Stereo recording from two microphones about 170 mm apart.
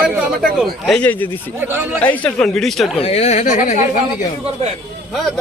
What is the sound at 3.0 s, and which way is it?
Speech, 40° left (ahead or behind).